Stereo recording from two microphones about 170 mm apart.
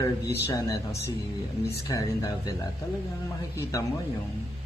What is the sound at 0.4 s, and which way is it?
A man's voice, 15° left (ahead or behind).